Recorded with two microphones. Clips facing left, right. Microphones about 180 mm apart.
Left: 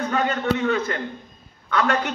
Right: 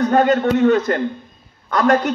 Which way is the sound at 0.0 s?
40° right (ahead or behind).